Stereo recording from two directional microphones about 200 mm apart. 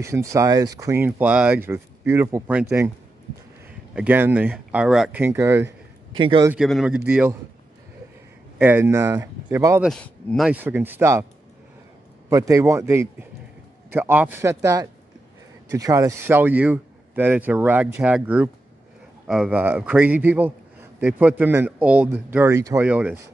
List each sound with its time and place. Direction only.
0.0 s speech: 15° right (ahead or behind)
3.9 s speech: 10° right (ahead or behind)
6.1 s a man's voice: 25° right (ahead or behind)
6.5 s a man's voice: centre (ahead or behind)
8.5 s speech: 10° right (ahead or behind)
9.8 s speech: 5° left (ahead or behind); by 11.2 s 15° right (ahead or behind)
12.3 s speech: 15° right (ahead or behind)